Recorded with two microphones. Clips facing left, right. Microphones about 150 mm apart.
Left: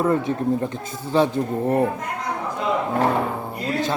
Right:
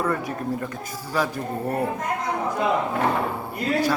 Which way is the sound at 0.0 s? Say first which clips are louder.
Left 5 dB; 25° left (ahead or behind).